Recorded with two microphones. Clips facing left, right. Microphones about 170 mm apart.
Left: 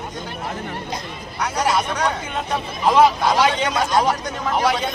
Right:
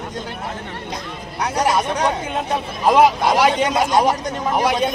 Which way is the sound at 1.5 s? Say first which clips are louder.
Right 2 dB; 20° right (ahead or behind).